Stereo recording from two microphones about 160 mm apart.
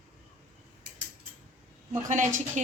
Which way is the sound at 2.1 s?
50° right (ahead or behind).